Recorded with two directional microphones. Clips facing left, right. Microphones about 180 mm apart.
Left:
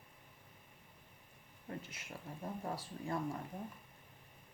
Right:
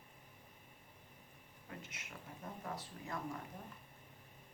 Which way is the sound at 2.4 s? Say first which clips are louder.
Left 4 dB; 30° left (ahead or behind).